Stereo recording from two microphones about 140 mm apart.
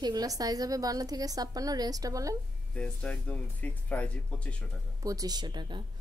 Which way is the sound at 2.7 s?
5° left (ahead or behind).